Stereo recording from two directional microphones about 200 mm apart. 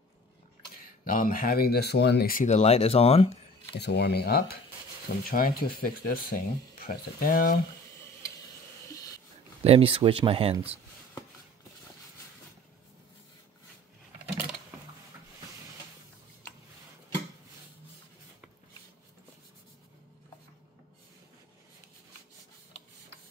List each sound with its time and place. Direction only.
0.8 s speech: 45° left (ahead or behind)
3.7 s speech: 55° left (ahead or behind)
8.9 s a sound: 15° left (ahead or behind)
9.6 s speech: 30° right (ahead or behind)